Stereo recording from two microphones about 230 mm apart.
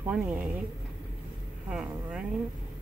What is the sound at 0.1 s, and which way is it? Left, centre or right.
Speech, centre.